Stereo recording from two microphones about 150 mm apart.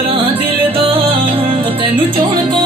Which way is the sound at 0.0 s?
40° right (ahead or behind).